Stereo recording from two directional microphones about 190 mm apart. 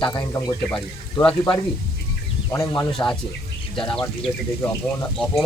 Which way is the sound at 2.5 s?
15° left (ahead or behind).